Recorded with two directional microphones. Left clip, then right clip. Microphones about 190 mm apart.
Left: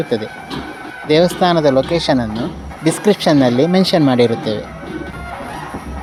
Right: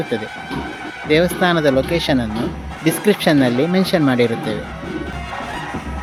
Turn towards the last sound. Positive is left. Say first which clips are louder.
# left 3 dB
turn(degrees=15)  # may be behind; listen again after turning